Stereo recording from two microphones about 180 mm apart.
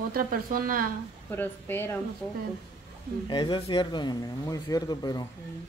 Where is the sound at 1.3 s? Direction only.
10° left (ahead or behind).